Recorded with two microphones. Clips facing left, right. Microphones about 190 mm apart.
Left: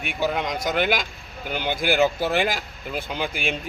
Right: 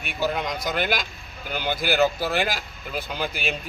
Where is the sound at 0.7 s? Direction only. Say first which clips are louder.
Left 3 dB; 15° left (ahead or behind).